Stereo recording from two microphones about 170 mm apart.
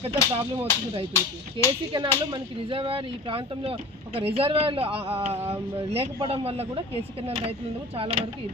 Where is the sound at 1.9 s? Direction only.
25° right (ahead or behind).